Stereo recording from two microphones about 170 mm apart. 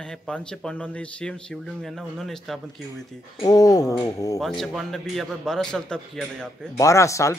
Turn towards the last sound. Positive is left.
turn(degrees=20)  # may be behind; listen again after turning